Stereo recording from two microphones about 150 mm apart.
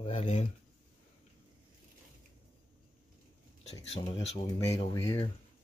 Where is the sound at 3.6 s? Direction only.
45° left (ahead or behind).